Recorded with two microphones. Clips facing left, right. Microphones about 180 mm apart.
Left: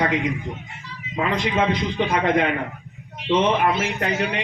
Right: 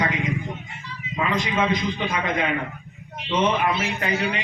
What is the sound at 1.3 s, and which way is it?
A man's voice, 65° left (ahead or behind).